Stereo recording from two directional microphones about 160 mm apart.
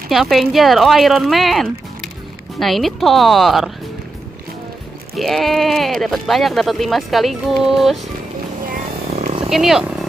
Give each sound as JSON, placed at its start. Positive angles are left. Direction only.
{"t": 0.1, "sound": "speech", "side_deg": 0}
{"t": 5.1, "sound": "speech", "side_deg": 0}
{"t": 9.1, "sound": "wild animals", "side_deg": -35}
{"t": 9.5, "sound": "speech", "side_deg": 0}